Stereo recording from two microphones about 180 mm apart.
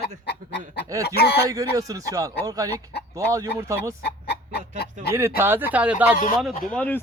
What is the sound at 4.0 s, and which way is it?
Chicken, 65° left (ahead or behind).